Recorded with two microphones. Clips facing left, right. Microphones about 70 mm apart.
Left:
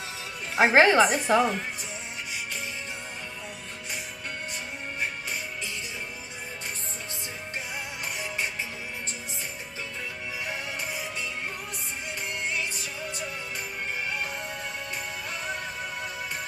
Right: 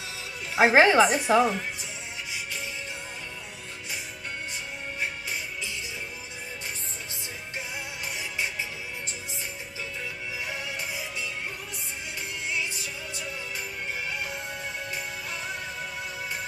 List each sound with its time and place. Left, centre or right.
0.6 s speech: centre
10.8 s music: left